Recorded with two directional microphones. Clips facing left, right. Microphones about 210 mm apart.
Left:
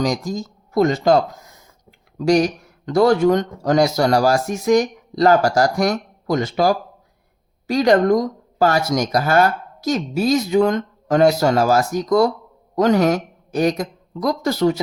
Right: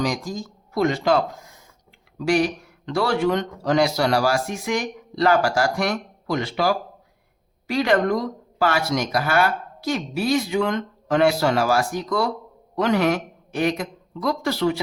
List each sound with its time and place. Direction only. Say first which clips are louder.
0.0 s a woman's voice: left 4 dB; 45° left (ahead or behind)